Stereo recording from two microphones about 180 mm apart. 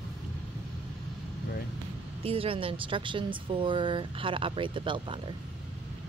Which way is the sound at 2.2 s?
30° right (ahead or behind).